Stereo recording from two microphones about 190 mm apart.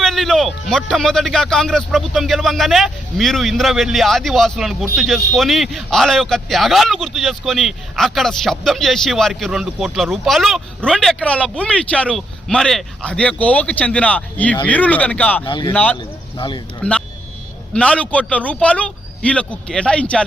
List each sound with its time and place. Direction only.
0.0 s speech: centre (ahead or behind)
15.4 s speech: 25° left (ahead or behind)
15.7 s a man's voice: 5° left (ahead or behind)
16.0 s a sound: 25° left (ahead or behind)
17.7 s a man's voice: 5° left (ahead or behind)